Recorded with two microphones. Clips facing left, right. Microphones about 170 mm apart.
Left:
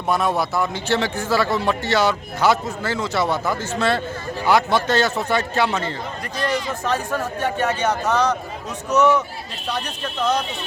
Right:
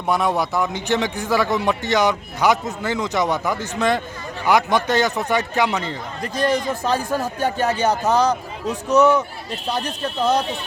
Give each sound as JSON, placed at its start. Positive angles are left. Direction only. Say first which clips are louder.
{"t": 0.1, "sound": "a man's voice", "louder": "right 1 dB", "side_deg": -15}
{"t": 6.3, "sound": "speech", "louder": "right 4 dB", "side_deg": -40}